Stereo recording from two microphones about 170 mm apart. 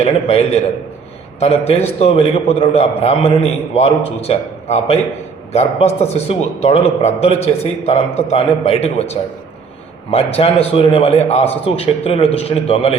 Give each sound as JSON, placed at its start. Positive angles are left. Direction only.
{"t": 0.0, "sound": "a man's voice", "side_deg": 35}